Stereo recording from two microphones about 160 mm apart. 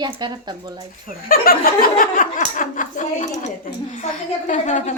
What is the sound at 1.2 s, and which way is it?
Speech, 65° left (ahead or behind).